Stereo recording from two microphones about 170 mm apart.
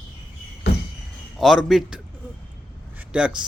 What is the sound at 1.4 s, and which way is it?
Speech, centre (ahead or behind).